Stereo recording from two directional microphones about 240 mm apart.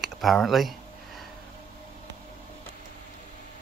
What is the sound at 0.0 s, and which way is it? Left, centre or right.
Speech, centre.